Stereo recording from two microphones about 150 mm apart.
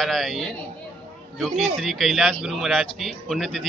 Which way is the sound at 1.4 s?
Centre (ahead or behind).